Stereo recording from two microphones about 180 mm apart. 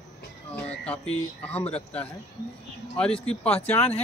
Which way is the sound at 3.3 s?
5° left (ahead or behind).